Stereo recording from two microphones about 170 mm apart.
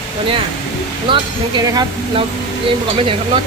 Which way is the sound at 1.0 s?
25° right (ahead or behind).